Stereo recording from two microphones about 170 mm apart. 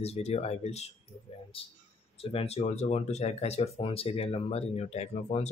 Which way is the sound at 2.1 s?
35° left (ahead or behind).